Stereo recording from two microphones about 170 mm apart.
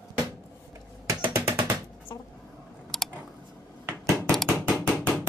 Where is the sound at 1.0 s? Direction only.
15° right (ahead or behind).